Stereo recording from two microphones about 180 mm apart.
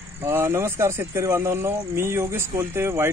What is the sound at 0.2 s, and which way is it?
Speech, 15° right (ahead or behind).